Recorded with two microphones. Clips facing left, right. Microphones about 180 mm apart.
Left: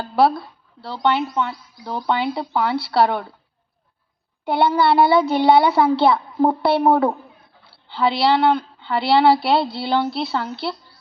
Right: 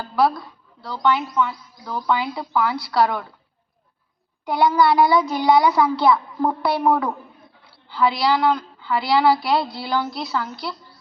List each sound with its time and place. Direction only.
0.0 s speech: 30° left (ahead or behind)
4.4 s speech: 30° left (ahead or behind)